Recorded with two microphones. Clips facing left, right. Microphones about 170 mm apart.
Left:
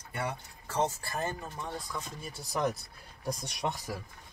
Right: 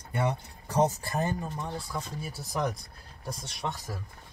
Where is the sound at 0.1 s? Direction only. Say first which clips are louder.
Right 6 dB; 20° right (ahead or behind).